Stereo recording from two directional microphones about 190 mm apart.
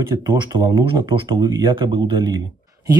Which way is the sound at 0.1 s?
20° right (ahead or behind).